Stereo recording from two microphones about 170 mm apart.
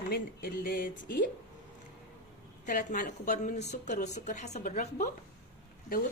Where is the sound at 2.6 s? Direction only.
50° left (ahead or behind).